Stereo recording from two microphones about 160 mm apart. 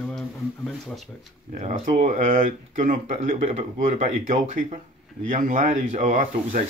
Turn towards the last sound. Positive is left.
turn(degrees=-50)  # may be behind; listen again after turning